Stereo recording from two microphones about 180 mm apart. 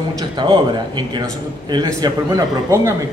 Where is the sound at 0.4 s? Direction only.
25° right (ahead or behind).